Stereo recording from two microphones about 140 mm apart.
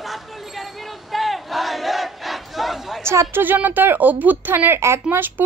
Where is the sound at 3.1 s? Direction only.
15° right (ahead or behind).